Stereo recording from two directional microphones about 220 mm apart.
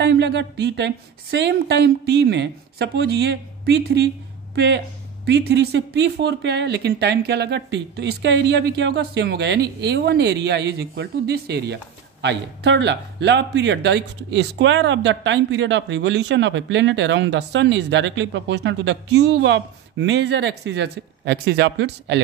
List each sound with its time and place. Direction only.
0.0 s speech: 50° right (ahead or behind)